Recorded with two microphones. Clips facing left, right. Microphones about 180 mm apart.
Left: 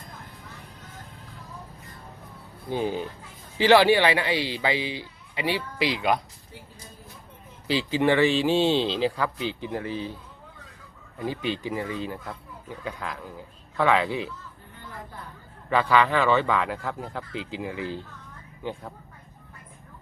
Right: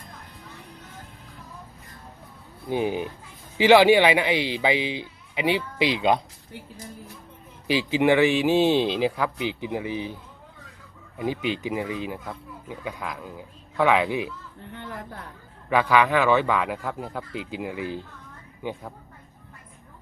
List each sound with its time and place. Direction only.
2.6 s speech: 15° right (ahead or behind)
7.7 s speech: 15° right (ahead or behind)
11.2 s speech: 15° right (ahead or behind)
14.8 s speech: 90° right
15.7 s speech: 10° right (ahead or behind)